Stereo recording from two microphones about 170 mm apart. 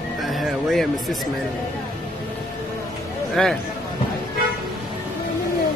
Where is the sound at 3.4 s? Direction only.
5° left (ahead or behind).